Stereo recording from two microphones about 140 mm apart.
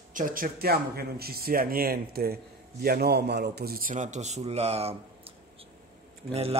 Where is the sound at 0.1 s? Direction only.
80° right.